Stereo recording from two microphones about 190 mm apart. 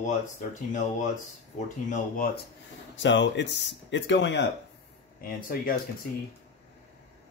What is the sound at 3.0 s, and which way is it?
Speech, 70° left (ahead or behind).